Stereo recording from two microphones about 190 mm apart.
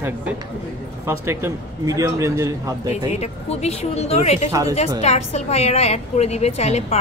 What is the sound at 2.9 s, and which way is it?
A woman's voice, 35° left (ahead or behind).